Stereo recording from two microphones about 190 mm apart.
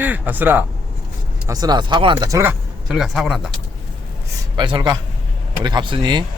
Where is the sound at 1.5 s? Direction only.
20° right (ahead or behind); by 3.4 s centre (ahead or behind).